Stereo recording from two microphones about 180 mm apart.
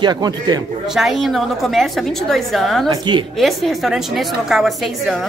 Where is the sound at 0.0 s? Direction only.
25° right (ahead or behind).